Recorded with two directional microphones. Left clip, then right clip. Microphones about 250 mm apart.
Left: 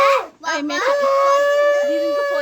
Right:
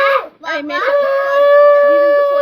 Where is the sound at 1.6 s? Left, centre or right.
Left.